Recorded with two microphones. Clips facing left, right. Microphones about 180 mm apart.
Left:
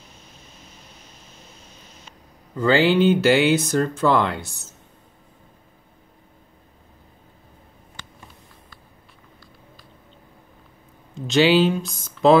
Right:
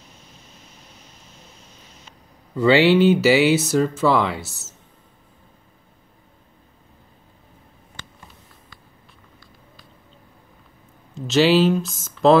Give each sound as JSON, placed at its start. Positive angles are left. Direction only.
{"t": 2.5, "sound": "speech", "side_deg": -5}
{"t": 11.1, "sound": "speech", "side_deg": 0}